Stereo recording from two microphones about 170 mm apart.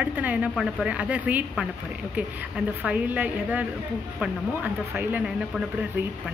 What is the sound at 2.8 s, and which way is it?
Speech, 10° right (ahead or behind).